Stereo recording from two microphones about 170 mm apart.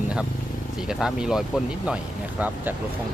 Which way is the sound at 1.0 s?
5° right (ahead or behind).